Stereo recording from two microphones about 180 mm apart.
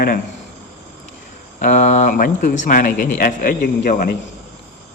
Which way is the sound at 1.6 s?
45° left (ahead or behind).